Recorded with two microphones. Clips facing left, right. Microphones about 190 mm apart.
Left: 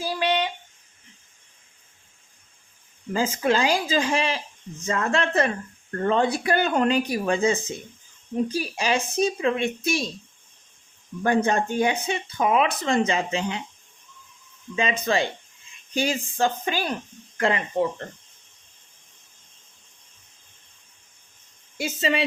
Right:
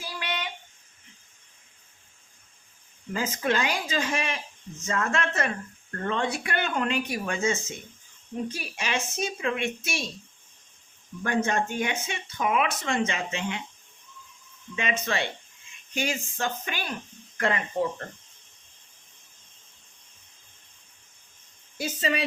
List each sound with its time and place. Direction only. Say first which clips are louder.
0.0 s a sound: left 10 dB; 30° left (ahead or behind)
3.1 s speech: left 5 dB; 30° left (ahead or behind)
11.2 s speech: left 5 dB; 30° left (ahead or behind)
14.8 s speech: left 5 dB; 30° left (ahead or behind)
21.8 s speech: left 3 dB; 25° left (ahead or behind)